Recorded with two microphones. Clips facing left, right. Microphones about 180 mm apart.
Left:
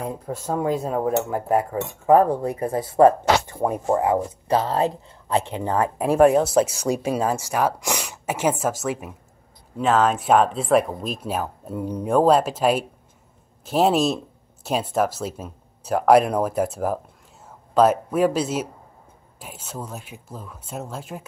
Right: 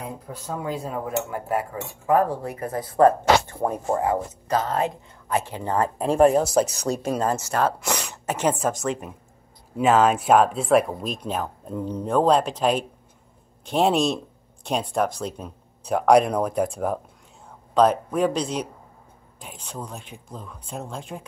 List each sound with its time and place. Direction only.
0.5 s cutlery: 40° left (ahead or behind)
2.0 s speech: 30° left (ahead or behind)
3.5 s speech: 10° left (ahead or behind)
9.8 s speech: 5° right (ahead or behind)